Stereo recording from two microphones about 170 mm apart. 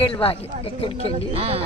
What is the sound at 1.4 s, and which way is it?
Speech, 35° right (ahead or behind).